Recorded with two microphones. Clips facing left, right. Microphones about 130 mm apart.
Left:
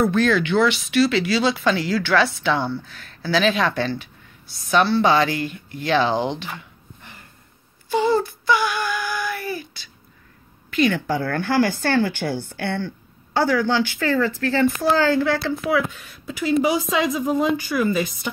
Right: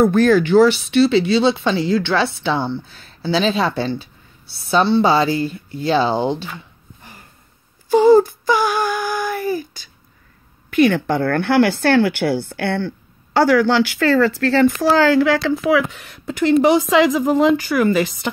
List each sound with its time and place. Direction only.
0.0 s speech: 45° right (ahead or behind)
7.9 s a sound: 45° right (ahead or behind)
10.7 s speech: 55° right (ahead or behind)
16.9 s speech: 90° right; by 18.3 s 70° right (ahead or behind)